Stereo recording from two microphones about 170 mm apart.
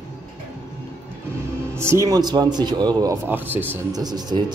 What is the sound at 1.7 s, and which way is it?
Speech, 15° right (ahead or behind).